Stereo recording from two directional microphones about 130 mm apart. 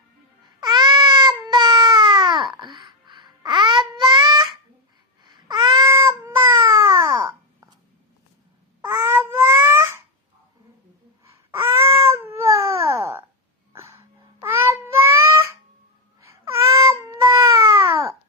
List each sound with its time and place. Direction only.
0.6 s cat: 30° right (ahead or behind)
5.2 s babbling: 35° right (ahead or behind)
5.8 s cat: 25° right (ahead or behind)
8.9 s babbling: 15° right (ahead or behind)
11.5 s cat: 20° right (ahead or behind)
13.7 s wheeze: 20° right (ahead or behind)
14.4 s child singing: 20° right (ahead or behind)
16.2 s a sound: 20° right (ahead or behind)